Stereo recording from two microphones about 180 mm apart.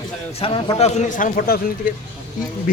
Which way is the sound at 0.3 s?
30° left (ahead or behind).